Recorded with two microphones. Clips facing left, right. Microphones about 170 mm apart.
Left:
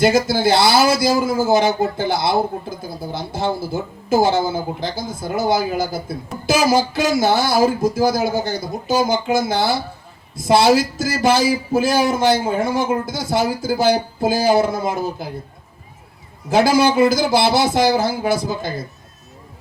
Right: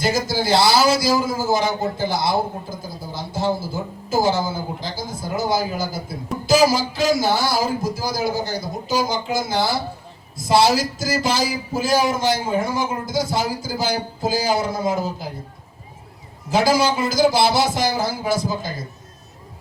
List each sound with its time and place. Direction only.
0.0 s speech: 60° left (ahead or behind)
16.5 s speech: 60° left (ahead or behind)